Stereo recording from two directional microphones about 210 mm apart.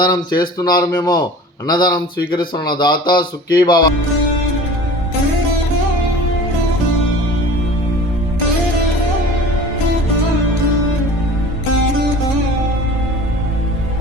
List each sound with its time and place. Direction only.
0.0 s speech: 20° left (ahead or behind)